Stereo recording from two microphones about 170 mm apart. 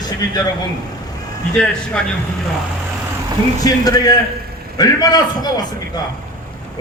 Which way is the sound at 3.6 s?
20° left (ahead or behind).